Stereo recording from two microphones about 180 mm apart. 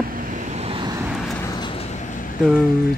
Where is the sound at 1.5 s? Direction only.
30° left (ahead or behind).